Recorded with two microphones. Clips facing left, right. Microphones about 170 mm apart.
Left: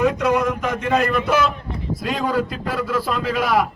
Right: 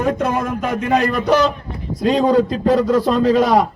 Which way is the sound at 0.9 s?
40° right (ahead or behind).